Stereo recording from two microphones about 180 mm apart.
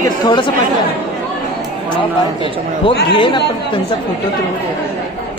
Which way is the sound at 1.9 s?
30° left (ahead or behind).